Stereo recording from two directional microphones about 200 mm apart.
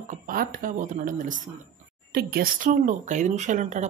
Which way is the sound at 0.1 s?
45° right (ahead or behind).